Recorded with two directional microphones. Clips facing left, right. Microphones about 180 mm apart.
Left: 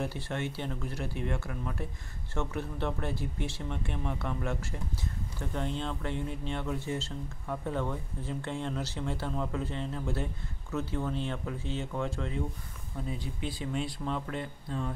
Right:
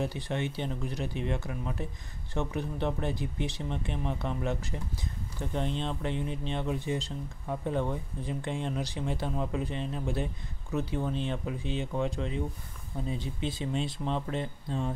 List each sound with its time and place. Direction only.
0.0 s speech: 15° right (ahead or behind)